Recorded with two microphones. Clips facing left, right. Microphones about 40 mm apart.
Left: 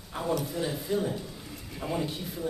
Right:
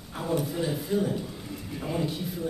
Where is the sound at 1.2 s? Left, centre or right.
Centre.